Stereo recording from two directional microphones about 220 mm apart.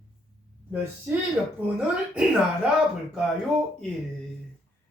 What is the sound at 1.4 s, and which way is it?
Speech, centre (ahead or behind).